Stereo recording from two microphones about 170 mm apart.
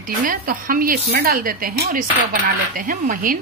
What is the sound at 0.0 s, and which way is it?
A woman's voice, 55° right (ahead or behind).